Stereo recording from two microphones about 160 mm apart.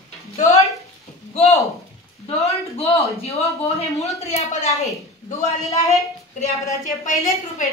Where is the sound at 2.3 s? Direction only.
40° left (ahead or behind).